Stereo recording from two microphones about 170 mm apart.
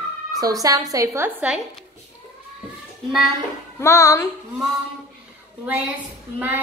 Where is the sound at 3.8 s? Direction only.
15° left (ahead or behind).